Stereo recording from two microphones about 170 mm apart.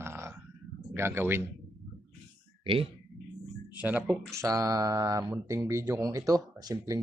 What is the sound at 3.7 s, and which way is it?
Speech, 10° right (ahead or behind).